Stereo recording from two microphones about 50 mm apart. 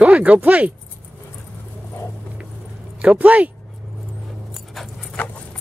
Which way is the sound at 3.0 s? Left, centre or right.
Right.